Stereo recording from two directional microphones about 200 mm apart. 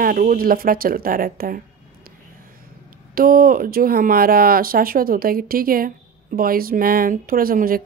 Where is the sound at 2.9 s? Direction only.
45° right (ahead or behind).